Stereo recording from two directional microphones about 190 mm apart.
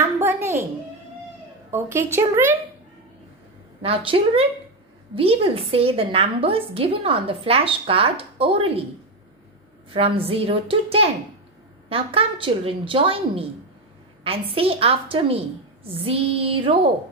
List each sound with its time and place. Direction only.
0.0 s a sound: 15° right (ahead or behind)
1.7 s a woman's voice: 10° right (ahead or behind)
3.8 s a woman's voice: 30° right (ahead or behind)
9.9 s a woman's voice: 30° right (ahead or behind)